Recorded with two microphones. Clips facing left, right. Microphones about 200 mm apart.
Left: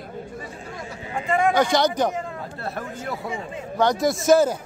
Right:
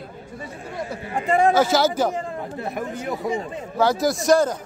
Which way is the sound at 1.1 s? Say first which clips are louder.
Right 3 dB; 35° right (ahead or behind).